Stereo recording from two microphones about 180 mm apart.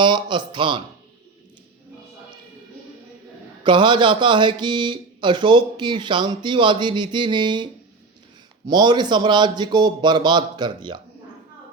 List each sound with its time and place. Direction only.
0.0 s speech: 25° right (ahead or behind)
3.6 s speech: 25° right (ahead or behind)